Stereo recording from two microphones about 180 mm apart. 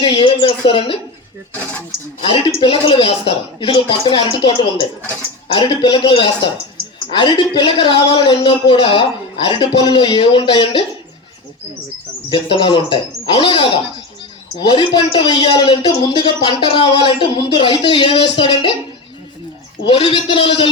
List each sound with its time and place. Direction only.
0.0 s a man's voice: 30° left (ahead or behind)
2.2 s a man's voice: 30° left (ahead or behind)
12.3 s a man's voice: 25° left (ahead or behind)
19.8 s a man's voice: 30° left (ahead or behind)